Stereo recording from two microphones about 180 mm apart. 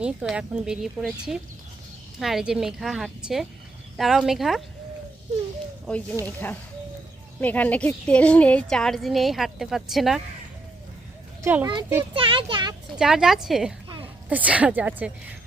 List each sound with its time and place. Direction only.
0.0 s a woman's voice: 5° right (ahead or behind)
5.8 s a woman's voice: 5° left (ahead or behind)
11.4 s a woman's voice: 10° right (ahead or behind)
12.1 s speech: 30° right (ahead or behind)
13.0 s a woman's voice: 5° right (ahead or behind)